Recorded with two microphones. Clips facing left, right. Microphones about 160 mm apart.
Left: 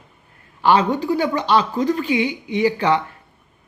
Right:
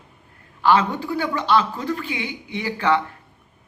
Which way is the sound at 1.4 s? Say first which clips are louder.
Left 2 dB; 15° left (ahead or behind).